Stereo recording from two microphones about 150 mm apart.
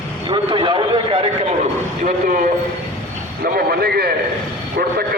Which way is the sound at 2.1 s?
60° right (ahead or behind).